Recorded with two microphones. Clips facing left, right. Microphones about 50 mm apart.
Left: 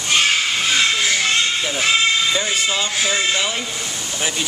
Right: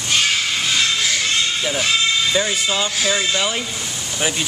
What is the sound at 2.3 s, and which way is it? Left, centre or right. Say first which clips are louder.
Speech: right 1 dB; centre.